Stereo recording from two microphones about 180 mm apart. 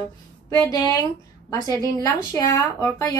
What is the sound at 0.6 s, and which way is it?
A woman's voice, 20° left (ahead or behind).